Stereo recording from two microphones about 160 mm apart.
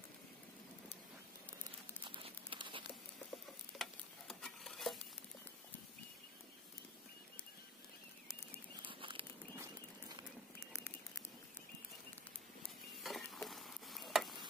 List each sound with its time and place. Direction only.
2.0 s crumpling: 30° right (ahead or behind)
3.7 s stir: centre (ahead or behind)
8.8 s a sound: 35° right (ahead or behind)
10.6 s bird: 15° left (ahead or behind)
13.0 s stir: centre (ahead or behind)